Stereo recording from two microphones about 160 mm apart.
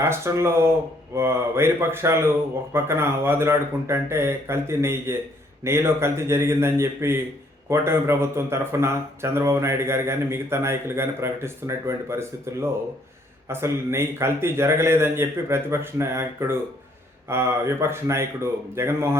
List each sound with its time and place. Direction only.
0.0 s speech: 15° right (ahead or behind)